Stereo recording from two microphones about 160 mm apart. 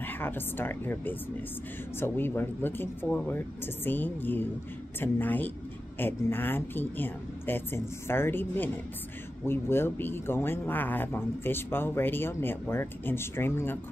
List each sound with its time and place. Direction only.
0.0 s speech: 15° left (ahead or behind)